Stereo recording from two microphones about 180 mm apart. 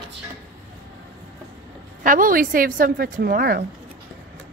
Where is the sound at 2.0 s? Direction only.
50° right (ahead or behind).